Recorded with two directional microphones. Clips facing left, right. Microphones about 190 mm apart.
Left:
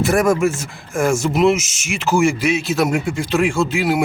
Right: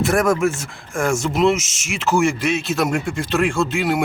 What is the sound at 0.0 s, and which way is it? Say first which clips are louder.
Speech: left 2 dB; centre (ahead or behind).